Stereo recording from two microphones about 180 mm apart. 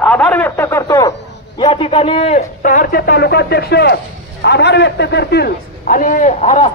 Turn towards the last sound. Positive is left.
turn(degrees=40)  # may be behind; listen again after turning